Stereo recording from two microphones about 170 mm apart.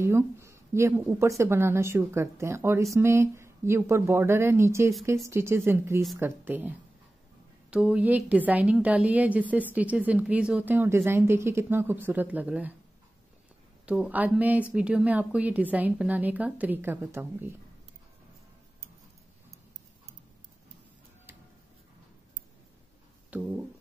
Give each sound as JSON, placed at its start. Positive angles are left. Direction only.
{"t": 0.0, "sound": "a woman's voice", "side_deg": -15}
{"t": 7.7, "sound": "a woman's voice", "side_deg": -5}
{"t": 13.8, "sound": "a woman's voice", "side_deg": -10}
{"t": 23.3, "sound": "a sound", "side_deg": -5}